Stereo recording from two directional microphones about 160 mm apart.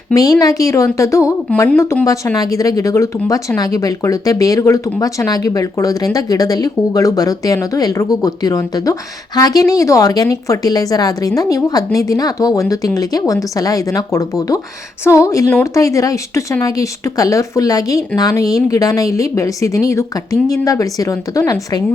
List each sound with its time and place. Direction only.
0.1 s speech: 20° left (ahead or behind)